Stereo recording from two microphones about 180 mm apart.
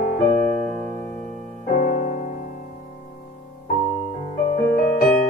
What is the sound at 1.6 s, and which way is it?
Music, 50° left (ahead or behind).